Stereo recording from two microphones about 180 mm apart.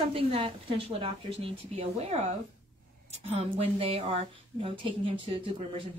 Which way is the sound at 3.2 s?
35° right (ahead or behind).